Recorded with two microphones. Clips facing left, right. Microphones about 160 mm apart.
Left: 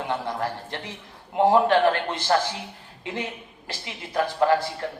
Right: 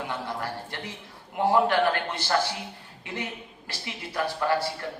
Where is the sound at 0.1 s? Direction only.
25° left (ahead or behind).